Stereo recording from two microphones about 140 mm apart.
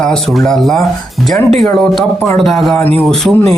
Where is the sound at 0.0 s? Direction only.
5° left (ahead or behind).